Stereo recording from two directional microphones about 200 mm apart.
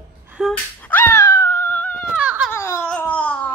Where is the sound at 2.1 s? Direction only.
5° right (ahead or behind).